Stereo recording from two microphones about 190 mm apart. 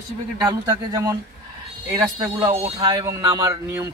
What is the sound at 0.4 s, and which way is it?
Speech, 20° right (ahead or behind).